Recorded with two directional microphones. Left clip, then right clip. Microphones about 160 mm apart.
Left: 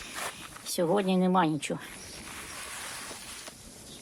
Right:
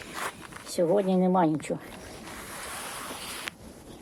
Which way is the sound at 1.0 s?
20° left (ahead or behind).